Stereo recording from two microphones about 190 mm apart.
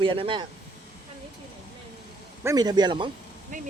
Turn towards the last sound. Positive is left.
turn(degrees=-25)  # may be behind; listen again after turning